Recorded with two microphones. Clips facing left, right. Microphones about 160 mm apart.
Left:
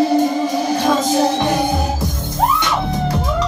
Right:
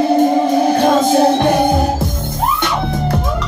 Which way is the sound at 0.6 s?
55° right (ahead or behind).